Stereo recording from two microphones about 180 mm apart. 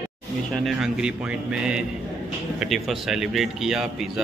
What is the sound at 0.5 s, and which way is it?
A man's voice, centre (ahead or behind).